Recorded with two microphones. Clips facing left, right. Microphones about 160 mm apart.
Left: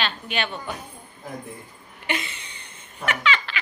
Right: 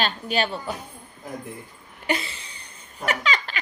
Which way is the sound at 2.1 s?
35° right (ahead or behind).